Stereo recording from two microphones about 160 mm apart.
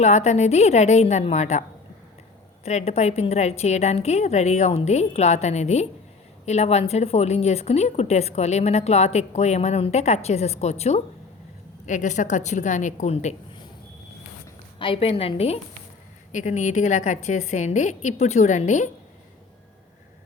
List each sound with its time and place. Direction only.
0.0 s a woman's voice: 45° left (ahead or behind)
2.6 s a woman's voice: 45° left (ahead or behind)
14.8 s a woman's voice: 35° left (ahead or behind)
16.3 s a woman's voice: 50° left (ahead or behind)